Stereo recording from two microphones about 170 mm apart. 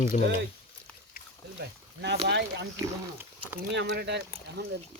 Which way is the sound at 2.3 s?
90° right.